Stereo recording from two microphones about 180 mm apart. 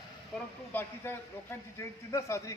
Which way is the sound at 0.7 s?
10° left (ahead or behind).